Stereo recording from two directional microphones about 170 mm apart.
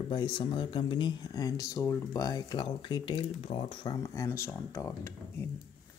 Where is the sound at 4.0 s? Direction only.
20° left (ahead or behind).